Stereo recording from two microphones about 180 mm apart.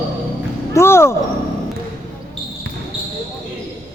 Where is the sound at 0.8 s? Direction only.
15° left (ahead or behind).